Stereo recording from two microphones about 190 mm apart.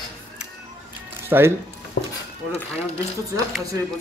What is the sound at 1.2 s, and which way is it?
Speech, 10° right (ahead or behind).